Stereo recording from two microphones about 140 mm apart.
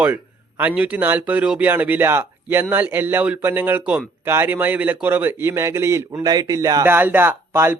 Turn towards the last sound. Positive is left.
turn(degrees=-15)  # may be behind; listen again after turning